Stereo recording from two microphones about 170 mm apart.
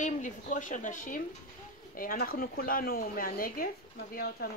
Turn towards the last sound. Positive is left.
turn(degrees=65)  # may be behind; listen again after turning